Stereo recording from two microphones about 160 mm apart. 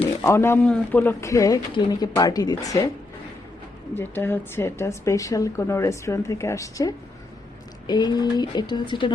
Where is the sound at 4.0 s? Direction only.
15° left (ahead or behind).